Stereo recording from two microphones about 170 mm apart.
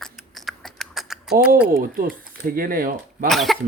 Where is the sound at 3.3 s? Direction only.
Centre (ahead or behind).